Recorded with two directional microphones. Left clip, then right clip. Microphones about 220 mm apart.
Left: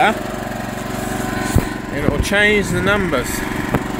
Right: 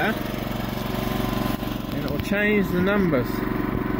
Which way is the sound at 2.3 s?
5° left (ahead or behind).